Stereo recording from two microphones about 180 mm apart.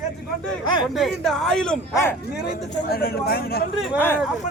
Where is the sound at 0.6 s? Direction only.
25° left (ahead or behind).